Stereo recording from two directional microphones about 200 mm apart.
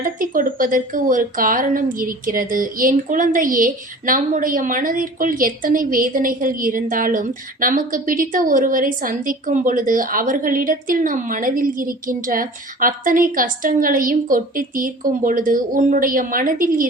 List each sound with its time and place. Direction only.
0.0 s speech: 45° right (ahead or behind)